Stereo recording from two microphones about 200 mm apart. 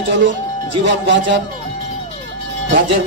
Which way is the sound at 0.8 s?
65° right (ahead or behind).